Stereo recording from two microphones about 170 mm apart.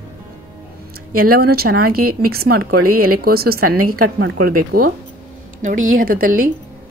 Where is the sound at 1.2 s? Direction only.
60° right (ahead or behind).